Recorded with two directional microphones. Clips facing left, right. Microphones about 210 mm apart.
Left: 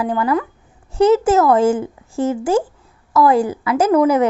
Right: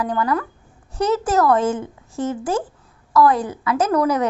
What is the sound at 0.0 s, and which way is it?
A woman's voice, 25° left (ahead or behind).